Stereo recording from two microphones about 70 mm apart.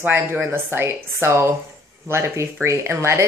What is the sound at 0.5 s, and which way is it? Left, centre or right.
Speech, right.